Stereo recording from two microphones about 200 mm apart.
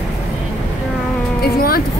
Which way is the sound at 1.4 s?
50° left (ahead or behind).